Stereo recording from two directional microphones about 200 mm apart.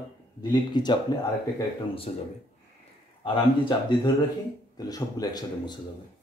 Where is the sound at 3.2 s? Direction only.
25° left (ahead or behind).